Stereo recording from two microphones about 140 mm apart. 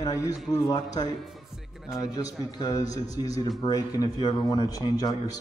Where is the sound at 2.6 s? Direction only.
25° left (ahead or behind).